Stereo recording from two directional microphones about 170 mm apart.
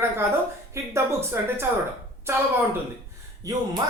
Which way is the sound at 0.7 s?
15° right (ahead or behind).